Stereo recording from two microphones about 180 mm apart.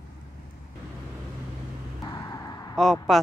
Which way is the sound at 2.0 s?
20° left (ahead or behind).